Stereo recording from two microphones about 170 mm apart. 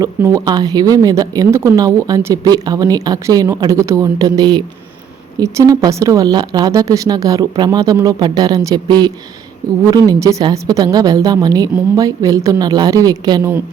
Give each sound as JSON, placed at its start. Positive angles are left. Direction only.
{"t": 0.0, "sound": "speech", "side_deg": -15}